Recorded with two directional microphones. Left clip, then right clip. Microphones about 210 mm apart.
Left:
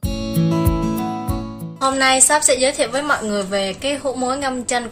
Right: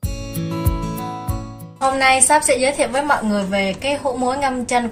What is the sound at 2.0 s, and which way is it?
A woman's voice, 55° left (ahead or behind).